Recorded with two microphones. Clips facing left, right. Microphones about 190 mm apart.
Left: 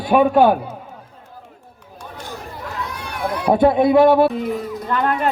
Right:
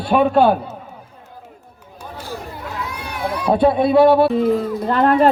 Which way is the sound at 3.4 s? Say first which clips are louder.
Left 1 dB; 20° left (ahead or behind).